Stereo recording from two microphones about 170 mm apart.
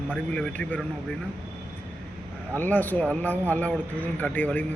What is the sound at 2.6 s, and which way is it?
A man's voice, 10° left (ahead or behind).